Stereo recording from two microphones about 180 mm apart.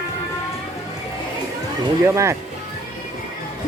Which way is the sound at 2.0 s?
15° right (ahead or behind).